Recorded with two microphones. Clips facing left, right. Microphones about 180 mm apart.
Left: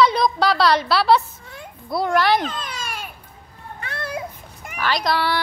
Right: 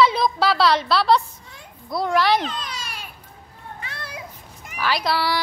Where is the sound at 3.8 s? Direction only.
50° left (ahead or behind).